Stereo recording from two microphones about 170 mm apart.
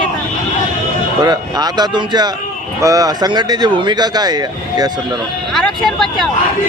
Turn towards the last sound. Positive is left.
turn(degrees=0)  # may be behind; listen again after turning